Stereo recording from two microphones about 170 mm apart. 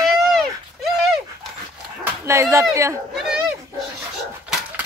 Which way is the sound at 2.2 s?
15° right (ahead or behind).